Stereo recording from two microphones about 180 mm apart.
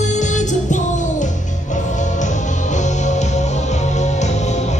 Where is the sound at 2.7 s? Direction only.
40° left (ahead or behind).